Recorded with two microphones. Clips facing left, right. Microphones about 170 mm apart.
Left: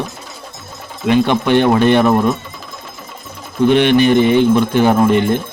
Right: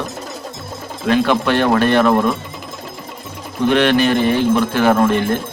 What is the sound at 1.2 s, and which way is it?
Speech, 20° left (ahead or behind).